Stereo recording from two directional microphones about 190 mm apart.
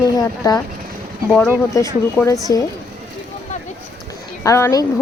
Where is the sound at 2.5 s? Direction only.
15° left (ahead or behind).